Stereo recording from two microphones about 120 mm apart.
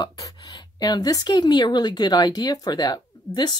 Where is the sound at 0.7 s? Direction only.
35° left (ahead or behind).